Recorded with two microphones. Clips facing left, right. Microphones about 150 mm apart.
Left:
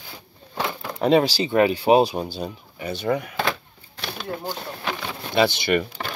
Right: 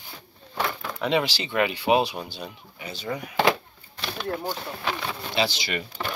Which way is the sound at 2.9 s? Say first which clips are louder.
Left 8 dB; 60° left (ahead or behind).